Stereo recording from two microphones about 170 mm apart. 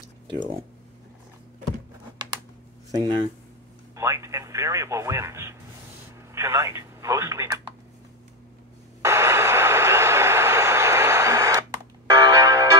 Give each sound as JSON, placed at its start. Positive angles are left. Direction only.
{"t": 0.3, "sound": "speech", "side_deg": -20}
{"t": 3.9, "sound": "speech", "side_deg": -15}
{"t": 9.0, "sound": "vehicle", "side_deg": -15}
{"t": 12.1, "sound": "music", "side_deg": -20}